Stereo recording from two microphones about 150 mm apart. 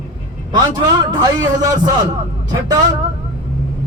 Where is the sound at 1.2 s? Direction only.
25° right (ahead or behind).